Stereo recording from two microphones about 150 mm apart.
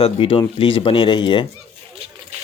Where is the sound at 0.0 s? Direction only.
35° left (ahead or behind).